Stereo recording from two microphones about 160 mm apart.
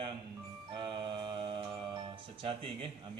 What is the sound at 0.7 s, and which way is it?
Music, 30° right (ahead or behind).